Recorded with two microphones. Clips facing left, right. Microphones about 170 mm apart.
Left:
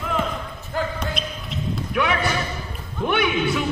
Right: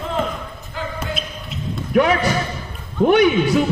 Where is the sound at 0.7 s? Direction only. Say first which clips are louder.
Left 4 dB; 45° left (ahead or behind).